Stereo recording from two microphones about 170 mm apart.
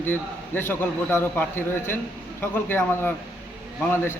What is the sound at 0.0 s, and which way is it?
A man's voice, 10° left (ahead or behind).